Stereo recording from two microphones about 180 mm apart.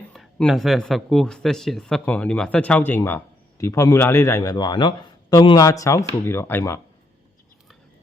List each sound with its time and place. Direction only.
0.1 s a man's voice: centre (ahead or behind)